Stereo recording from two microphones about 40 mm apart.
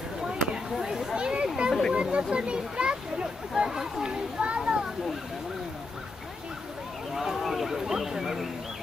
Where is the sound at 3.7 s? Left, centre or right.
Centre.